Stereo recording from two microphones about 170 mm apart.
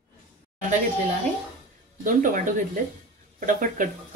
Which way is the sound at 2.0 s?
55° right (ahead or behind).